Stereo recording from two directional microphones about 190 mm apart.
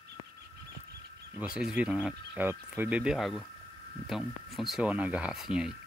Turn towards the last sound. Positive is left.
turn(degrees=-5)  # may be behind; listen again after turning